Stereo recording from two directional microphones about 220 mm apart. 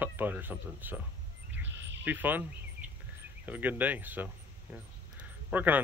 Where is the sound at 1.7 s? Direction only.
55° right (ahead or behind).